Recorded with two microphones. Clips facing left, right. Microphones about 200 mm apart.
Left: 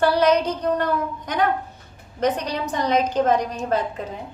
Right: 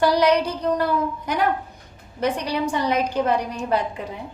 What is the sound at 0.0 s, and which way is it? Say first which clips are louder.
A woman's voice: even; 15° right (ahead or behind).